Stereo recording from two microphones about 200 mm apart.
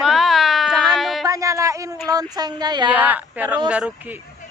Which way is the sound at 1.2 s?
15° right (ahead or behind).